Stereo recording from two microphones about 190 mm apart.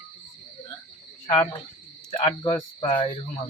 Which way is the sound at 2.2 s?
25° left (ahead or behind).